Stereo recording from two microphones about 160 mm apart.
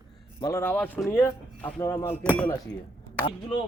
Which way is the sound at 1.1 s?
15° left (ahead or behind).